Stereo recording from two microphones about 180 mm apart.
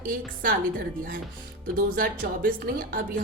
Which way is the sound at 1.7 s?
50° right (ahead or behind).